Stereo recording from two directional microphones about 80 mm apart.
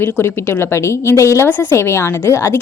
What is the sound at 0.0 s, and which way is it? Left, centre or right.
A woman's voice, left.